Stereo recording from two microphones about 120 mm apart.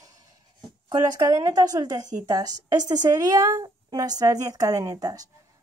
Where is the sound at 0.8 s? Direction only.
35° right (ahead or behind).